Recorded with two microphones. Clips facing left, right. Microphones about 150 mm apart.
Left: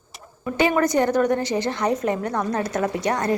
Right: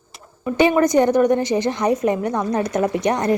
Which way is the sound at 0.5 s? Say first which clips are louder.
Right 4 dB; 20° right (ahead or behind).